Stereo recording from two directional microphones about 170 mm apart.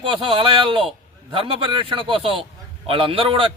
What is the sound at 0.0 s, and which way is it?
A man's voice, 30° right (ahead or behind).